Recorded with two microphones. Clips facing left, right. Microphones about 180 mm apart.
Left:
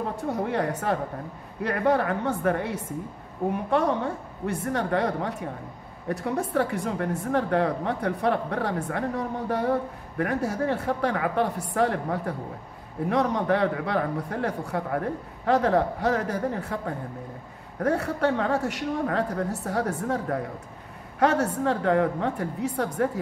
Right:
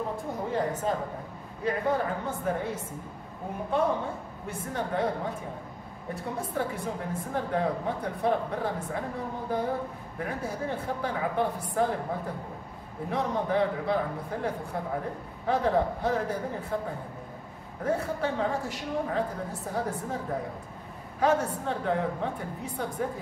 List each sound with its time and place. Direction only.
0.2 s a woman's voice: 70° left (ahead or behind)
17.8 s a woman's voice: 70° left (ahead or behind)
21.2 s a woman's voice: 75° left (ahead or behind)